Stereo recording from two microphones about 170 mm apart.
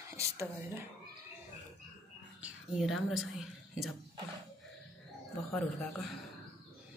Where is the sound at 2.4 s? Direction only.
Centre (ahead or behind).